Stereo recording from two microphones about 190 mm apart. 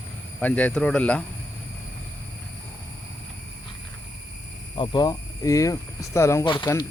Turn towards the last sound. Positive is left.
turn(degrees=20)  # may be behind; listen again after turning